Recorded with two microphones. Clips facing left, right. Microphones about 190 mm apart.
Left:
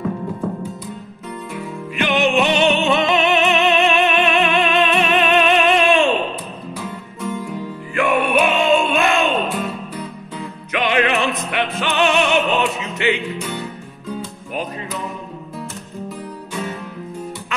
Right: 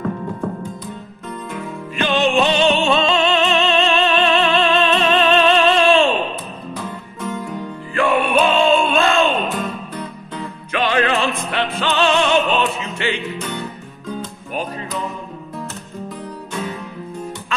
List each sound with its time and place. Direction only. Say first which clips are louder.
2.0 s music: even; 20° left (ahead or behind)
7.4 s music: even; 15° left (ahead or behind)
10.7 s music: even; 20° left (ahead or behind)